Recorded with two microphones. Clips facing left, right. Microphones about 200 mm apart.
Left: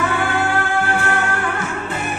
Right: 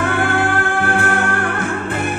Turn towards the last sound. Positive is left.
turn(degrees=-55)  # may be behind; listen again after turning